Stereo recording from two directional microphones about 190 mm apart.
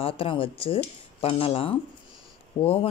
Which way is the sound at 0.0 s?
30° left (ahead or behind).